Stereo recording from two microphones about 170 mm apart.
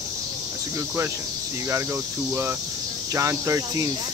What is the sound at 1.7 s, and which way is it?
Speech, 15° right (ahead or behind).